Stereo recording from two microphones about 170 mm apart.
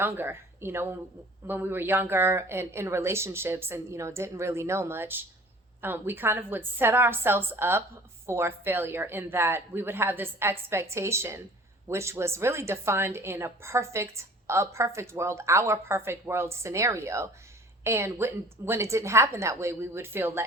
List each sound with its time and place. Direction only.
0.0 s a woman's voice: 15° right (ahead or behind)